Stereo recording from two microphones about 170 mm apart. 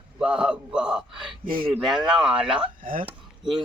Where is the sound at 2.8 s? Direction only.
55° right (ahead or behind).